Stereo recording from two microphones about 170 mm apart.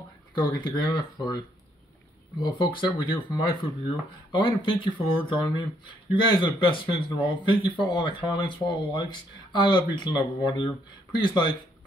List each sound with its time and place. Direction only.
0.3 s speech: 25° left (ahead or behind)
2.4 s speech: 25° left (ahead or behind)